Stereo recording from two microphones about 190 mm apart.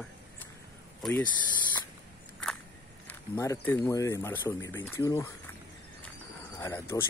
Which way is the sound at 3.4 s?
15° left (ahead or behind).